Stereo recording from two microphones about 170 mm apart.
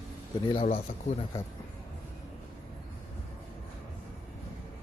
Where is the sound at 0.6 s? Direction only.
40° left (ahead or behind).